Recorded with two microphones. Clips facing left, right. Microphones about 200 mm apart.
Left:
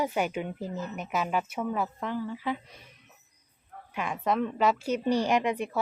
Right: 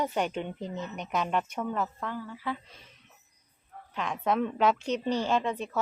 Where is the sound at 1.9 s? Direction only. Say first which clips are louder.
Left 4 dB; 20° left (ahead or behind).